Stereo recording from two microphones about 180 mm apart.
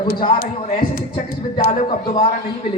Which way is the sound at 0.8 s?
25° left (ahead or behind).